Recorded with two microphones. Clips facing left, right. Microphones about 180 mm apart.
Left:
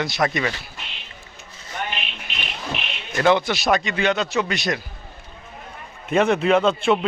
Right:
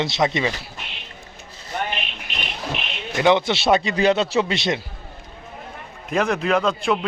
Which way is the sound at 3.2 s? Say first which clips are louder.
Right 1 dB; 20° right (ahead or behind).